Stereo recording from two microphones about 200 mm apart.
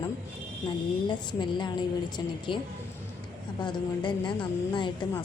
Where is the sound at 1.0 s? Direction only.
25° left (ahead or behind).